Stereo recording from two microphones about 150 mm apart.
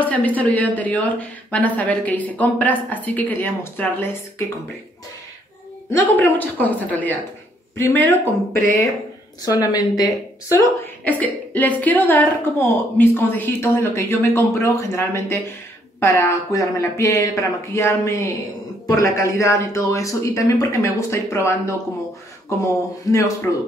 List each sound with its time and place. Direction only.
0.0 s a woman's voice: 10° left (ahead or behind)
5.9 s a woman's voice: 15° left (ahead or behind)
9.4 s a man's voice: 25° left (ahead or behind)
11.1 s a woman's voice: 10° left (ahead or behind)